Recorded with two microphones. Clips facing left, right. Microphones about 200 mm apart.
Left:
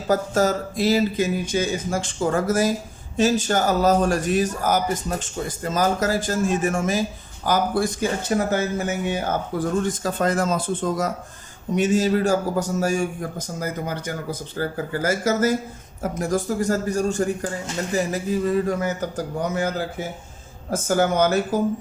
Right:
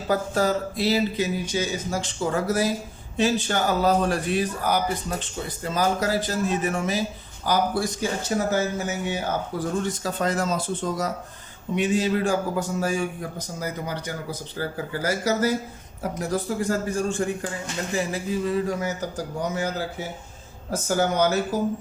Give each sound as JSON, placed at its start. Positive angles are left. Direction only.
{"t": 0.1, "sound": "a man's voice", "side_deg": 45}